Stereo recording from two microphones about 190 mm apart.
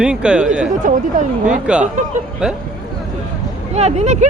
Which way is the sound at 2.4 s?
5° right (ahead or behind).